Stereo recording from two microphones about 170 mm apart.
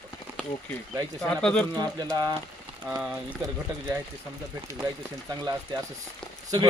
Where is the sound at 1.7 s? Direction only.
25° right (ahead or behind).